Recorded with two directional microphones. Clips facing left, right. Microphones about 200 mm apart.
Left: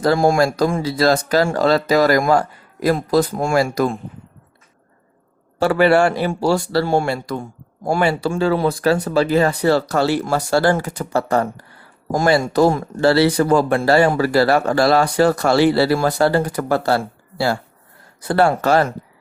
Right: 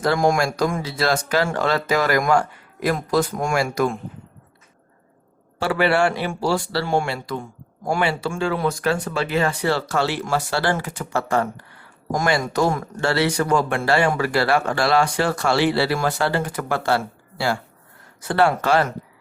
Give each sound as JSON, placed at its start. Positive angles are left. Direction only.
{"t": 0.0, "sound": "speech", "side_deg": 35}
{"t": 5.5, "sound": "speech", "side_deg": 40}